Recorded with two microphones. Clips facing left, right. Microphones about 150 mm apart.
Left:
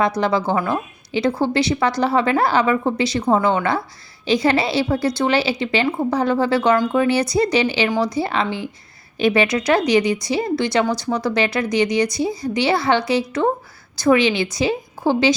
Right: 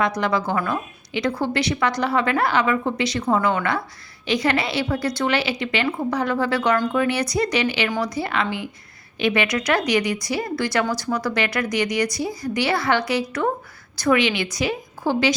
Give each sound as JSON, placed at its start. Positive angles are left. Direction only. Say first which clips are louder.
{"t": 0.2, "sound": "a woman's voice", "louder": "left 3 dB", "side_deg": 30}